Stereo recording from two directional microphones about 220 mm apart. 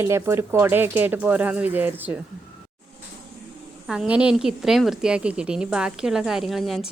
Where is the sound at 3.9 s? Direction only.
5° right (ahead or behind).